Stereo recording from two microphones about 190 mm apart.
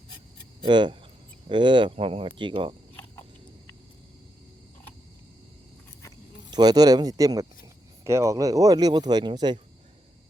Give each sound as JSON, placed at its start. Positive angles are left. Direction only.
{"t": 0.6, "sound": "speech", "side_deg": -25}
{"t": 6.5, "sound": "speech", "side_deg": -20}